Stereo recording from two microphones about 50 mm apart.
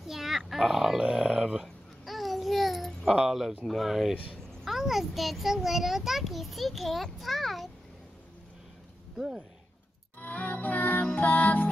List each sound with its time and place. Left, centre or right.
0.0 s grunt: centre
1.2 s a sound: centre
2.0 s babbling: centre
3.2 s a sound: centre
3.6 s a child's voice: centre
10.2 s music: left